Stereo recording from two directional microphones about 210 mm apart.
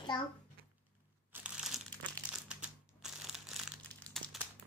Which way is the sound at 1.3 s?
5° right (ahead or behind).